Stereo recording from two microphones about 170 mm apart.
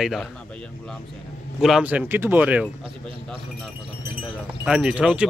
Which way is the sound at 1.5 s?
5° right (ahead or behind).